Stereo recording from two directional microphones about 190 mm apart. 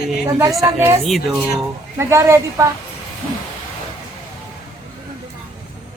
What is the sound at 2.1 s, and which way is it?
Speech, 15° right (ahead or behind).